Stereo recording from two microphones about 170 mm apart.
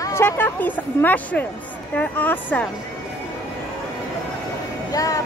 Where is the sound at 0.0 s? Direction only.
15° left (ahead or behind).